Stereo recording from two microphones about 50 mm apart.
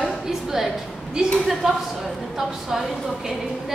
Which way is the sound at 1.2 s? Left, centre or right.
Centre.